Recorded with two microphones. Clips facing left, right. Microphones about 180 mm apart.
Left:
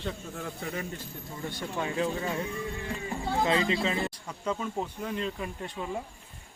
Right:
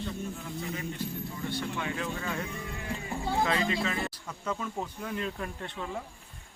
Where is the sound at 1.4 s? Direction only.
40° left (ahead or behind); by 4.1 s 25° left (ahead or behind).